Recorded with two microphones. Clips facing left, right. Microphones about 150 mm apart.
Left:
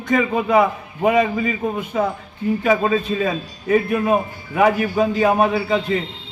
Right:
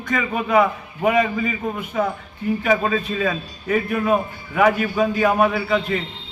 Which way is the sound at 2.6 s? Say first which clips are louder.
Left 3 dB; 25° left (ahead or behind).